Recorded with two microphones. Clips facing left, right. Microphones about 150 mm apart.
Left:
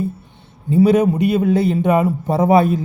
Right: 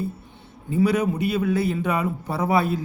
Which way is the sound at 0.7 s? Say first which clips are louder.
Left 8 dB; 25° left (ahead or behind).